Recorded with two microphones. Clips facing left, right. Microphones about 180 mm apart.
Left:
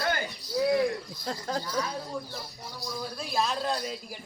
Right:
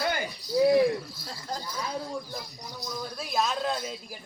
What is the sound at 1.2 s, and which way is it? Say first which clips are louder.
Speech: left 5 dB; 75° left (ahead or behind).